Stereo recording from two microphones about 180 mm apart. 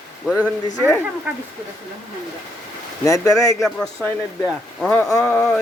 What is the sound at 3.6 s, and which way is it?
Speech, centre (ahead or behind).